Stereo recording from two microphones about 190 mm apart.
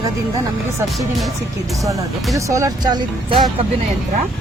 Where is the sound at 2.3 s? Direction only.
15° right (ahead or behind).